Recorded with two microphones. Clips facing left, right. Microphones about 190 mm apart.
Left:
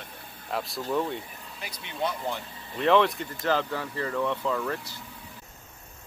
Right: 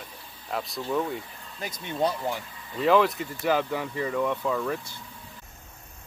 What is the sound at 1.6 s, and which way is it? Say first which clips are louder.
Speech: right 5 dB; 45° right (ahead or behind).